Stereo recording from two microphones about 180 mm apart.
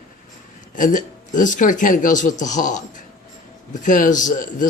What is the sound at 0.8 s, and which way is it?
Speech, 45° left (ahead or behind).